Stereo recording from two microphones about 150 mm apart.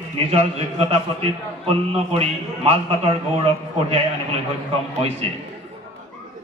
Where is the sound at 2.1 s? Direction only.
40° right (ahead or behind).